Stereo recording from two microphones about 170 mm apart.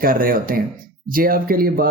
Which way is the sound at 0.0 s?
60° right (ahead or behind).